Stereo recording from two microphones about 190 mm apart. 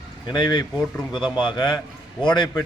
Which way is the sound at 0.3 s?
25° left (ahead or behind).